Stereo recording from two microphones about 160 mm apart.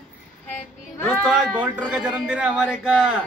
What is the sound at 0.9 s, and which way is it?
Children playing, 15° left (ahead or behind).